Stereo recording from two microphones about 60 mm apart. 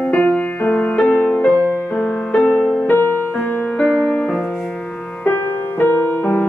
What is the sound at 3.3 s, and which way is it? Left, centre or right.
Music, left.